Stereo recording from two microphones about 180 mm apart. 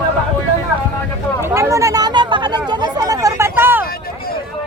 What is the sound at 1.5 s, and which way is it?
Chatter, 15° right (ahead or behind).